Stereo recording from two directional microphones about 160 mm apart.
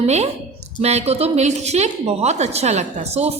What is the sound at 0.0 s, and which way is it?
A woman's voice, 40° right (ahead or behind).